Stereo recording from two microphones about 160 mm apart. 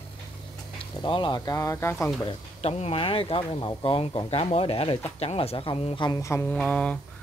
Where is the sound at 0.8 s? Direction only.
30° left (ahead or behind); by 2.1 s 15° left (ahead or behind).